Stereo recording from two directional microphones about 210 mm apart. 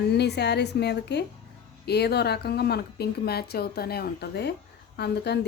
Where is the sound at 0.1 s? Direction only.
50° left (ahead or behind).